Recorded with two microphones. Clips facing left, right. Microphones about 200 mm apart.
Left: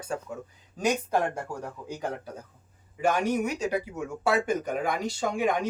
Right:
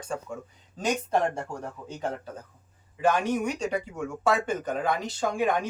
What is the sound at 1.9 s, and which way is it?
Speech, 10° left (ahead or behind).